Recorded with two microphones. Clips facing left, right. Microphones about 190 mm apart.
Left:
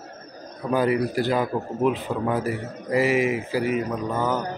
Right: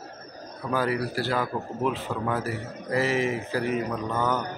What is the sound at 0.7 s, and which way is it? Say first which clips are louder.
A man's voice: left 5 dB; 20° left (ahead or behind).